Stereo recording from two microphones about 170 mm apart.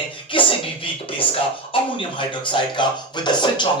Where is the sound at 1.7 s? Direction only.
30° left (ahead or behind).